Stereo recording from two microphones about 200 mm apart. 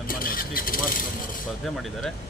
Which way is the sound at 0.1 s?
45° left (ahead or behind).